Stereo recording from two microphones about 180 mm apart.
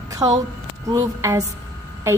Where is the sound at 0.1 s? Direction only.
20° right (ahead or behind).